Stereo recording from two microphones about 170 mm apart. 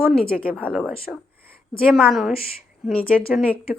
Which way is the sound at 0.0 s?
Centre (ahead or behind).